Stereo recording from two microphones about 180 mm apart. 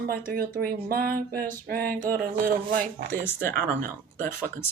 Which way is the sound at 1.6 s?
55° right (ahead or behind).